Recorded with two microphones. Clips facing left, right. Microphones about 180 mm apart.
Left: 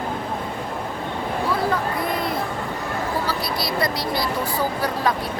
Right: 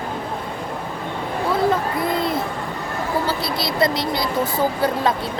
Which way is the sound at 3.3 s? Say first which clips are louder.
Right 2 dB; 25° right (ahead or behind).